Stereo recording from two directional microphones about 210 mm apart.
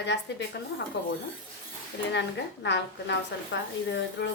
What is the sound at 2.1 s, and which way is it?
A woman's voice, 55° left (ahead or behind).